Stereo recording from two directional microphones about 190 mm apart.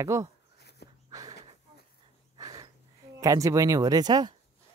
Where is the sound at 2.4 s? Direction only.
20° right (ahead or behind).